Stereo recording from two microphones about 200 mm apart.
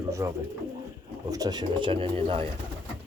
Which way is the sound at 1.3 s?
20° right (ahead or behind).